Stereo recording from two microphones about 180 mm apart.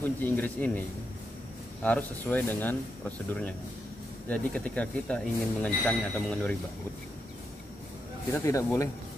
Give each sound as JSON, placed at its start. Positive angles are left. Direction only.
{"t": 0.0, "sound": "speech", "side_deg": 10}
{"t": 8.3, "sound": "speech", "side_deg": 15}